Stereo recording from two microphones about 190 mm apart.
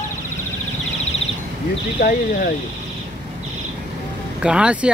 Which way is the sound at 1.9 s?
50° left (ahead or behind).